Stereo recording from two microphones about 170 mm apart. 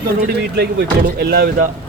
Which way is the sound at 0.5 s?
70° right (ahead or behind).